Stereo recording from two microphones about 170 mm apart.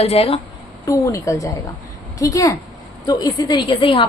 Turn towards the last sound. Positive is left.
turn(degrees=30)  # may be behind; listen again after turning